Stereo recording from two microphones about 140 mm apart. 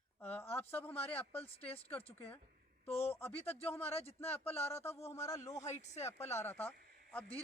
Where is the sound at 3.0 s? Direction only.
15° left (ahead or behind).